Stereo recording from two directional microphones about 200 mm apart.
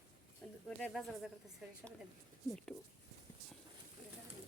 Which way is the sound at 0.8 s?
Centre (ahead or behind).